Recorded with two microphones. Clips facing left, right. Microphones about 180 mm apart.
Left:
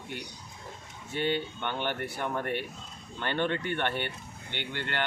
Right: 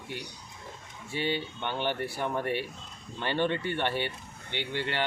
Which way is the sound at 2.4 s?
50° left (ahead or behind).